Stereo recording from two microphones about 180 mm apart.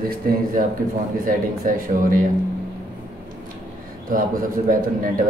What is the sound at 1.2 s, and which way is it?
A man's voice, 50° right (ahead or behind).